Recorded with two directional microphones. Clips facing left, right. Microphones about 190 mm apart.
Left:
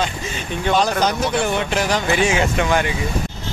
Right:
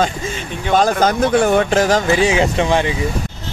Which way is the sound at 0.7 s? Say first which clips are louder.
Right 6 dB; 50° right (ahead or behind).